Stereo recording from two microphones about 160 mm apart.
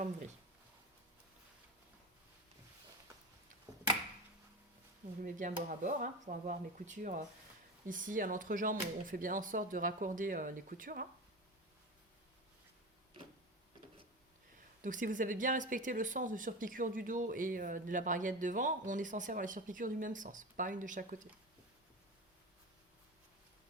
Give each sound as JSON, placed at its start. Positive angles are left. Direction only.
{"t": 5.2, "sound": "speech", "side_deg": -55}
{"t": 14.8, "sound": "speech", "side_deg": -55}